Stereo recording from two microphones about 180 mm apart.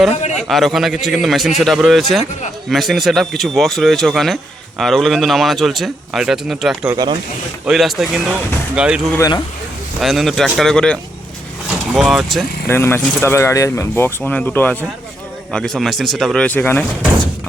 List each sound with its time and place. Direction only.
0.3 s speech: centre (ahead or behind)
6.9 s speech: 25° right (ahead or behind)
7.6 s speech: centre (ahead or behind)
9.1 s speech: 20° left (ahead or behind)
10.0 s speech: centre (ahead or behind)
11.9 s speech: centre (ahead or behind)
12.6 s speech: 10° left (ahead or behind)